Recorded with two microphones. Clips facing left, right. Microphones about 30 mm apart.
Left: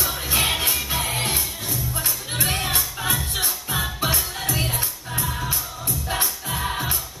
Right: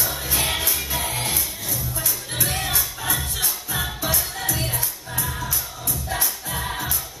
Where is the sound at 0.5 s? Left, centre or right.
Left.